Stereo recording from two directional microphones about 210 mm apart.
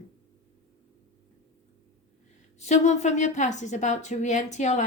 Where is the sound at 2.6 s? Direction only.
35° left (ahead or behind).